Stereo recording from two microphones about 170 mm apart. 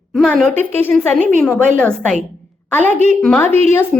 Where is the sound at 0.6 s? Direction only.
10° left (ahead or behind).